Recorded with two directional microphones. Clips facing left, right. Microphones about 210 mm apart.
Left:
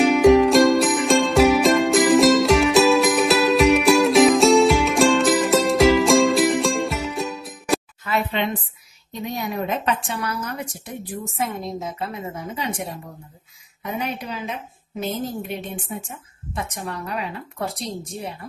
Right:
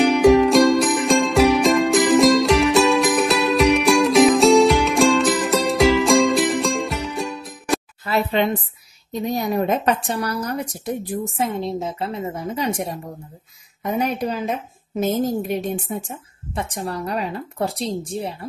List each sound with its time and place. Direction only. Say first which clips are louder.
0.0 s music: even; centre (ahead or behind)
8.0 s a sound: right 4 dB; 35° right (ahead or behind)
9.2 s a woman's voice: right 5 dB; 35° right (ahead or behind)